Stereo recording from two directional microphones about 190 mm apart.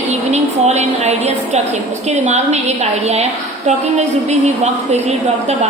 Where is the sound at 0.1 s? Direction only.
35° right (ahead or behind).